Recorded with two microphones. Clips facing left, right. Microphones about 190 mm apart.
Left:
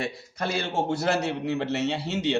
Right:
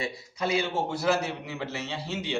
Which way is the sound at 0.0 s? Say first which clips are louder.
Left 1 dB; 60° left (ahead or behind).